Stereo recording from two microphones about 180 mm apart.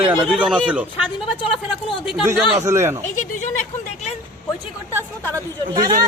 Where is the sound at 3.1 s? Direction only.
45° left (ahead or behind).